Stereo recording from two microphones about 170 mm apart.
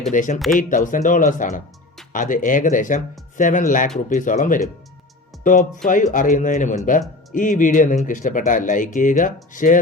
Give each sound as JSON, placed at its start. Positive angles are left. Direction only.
{"t": 0.1, "sound": "speech", "side_deg": 50}
{"t": 0.3, "sound": "speech", "side_deg": 0}
{"t": 0.7, "sound": "speech", "side_deg": 50}